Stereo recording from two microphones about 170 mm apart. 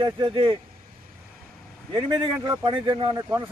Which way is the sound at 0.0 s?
30° right (ahead or behind).